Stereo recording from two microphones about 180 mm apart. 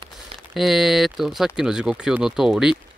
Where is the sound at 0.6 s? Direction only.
Centre (ahead or behind).